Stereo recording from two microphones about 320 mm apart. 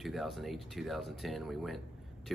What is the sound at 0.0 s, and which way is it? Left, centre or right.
Speech, centre.